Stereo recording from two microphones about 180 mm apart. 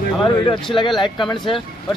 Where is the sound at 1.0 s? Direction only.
25° left (ahead or behind).